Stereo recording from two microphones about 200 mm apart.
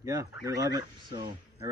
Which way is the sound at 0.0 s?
15° right (ahead or behind).